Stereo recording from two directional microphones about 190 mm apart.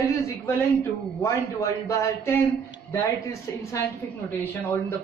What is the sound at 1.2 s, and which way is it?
A man's voice, 15° left (ahead or behind).